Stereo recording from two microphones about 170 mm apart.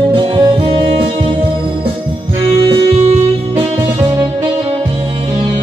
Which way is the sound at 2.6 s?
30° right (ahead or behind).